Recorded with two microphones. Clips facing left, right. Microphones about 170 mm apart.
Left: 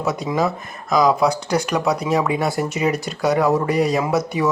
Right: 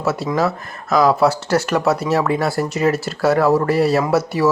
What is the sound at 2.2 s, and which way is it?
Speech, 10° left (ahead or behind).